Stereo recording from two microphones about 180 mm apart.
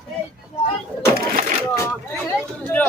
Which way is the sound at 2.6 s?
10° left (ahead or behind).